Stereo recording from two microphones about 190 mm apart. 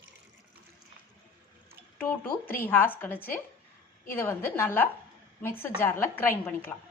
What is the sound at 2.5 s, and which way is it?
A woman's voice, 10° left (ahead or behind).